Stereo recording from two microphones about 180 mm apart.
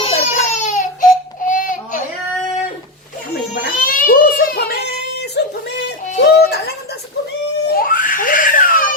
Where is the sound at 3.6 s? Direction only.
50° left (ahead or behind).